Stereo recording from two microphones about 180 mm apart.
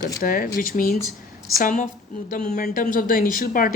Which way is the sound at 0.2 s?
50° left (ahead or behind).